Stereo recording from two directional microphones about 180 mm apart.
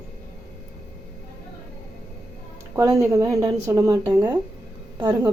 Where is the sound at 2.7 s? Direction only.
15° right (ahead or behind).